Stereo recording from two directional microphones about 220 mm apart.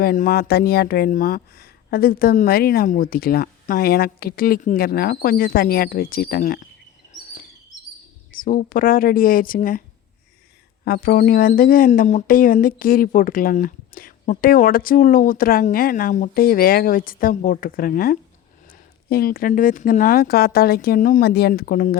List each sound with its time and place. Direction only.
0.0 s speech: 40° left (ahead or behind)
8.3 s speech: 40° left (ahead or behind)
10.8 s speech: 40° left (ahead or behind)